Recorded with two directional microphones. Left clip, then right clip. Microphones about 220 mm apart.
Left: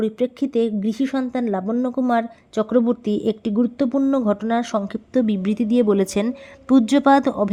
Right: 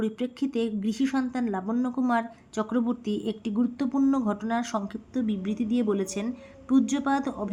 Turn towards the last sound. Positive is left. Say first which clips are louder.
# left 12 dB
turn(degrees=40)  # may be behind; listen again after turning